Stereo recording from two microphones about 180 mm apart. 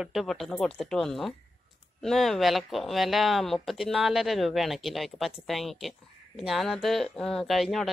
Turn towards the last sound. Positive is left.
turn(degrees=0)  # may be behind; listen again after turning